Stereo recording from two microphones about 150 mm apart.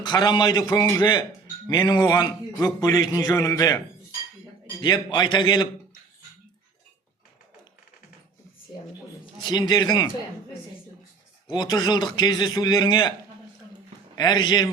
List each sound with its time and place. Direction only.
0.0 s a man's voice: 30° left (ahead or behind)
9.4 s speech: 30° left (ahead or behind)
11.4 s speech: 25° left (ahead or behind)
14.2 s speech: 30° left (ahead or behind)